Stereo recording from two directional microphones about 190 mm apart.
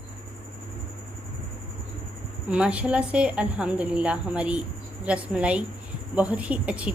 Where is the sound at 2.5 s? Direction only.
5° right (ahead or behind).